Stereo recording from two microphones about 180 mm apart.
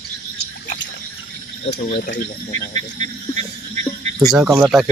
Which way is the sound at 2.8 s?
40° right (ahead or behind).